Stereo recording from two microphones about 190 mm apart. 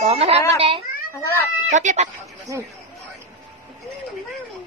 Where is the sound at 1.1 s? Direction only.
15° left (ahead or behind).